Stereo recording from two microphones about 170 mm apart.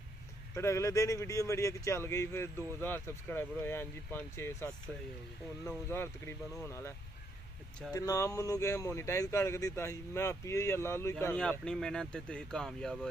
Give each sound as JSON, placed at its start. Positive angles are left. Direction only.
{"t": 0.6, "sound": "speech", "side_deg": 15}